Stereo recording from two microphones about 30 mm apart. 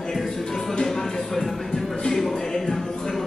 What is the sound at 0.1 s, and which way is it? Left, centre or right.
Music, centre.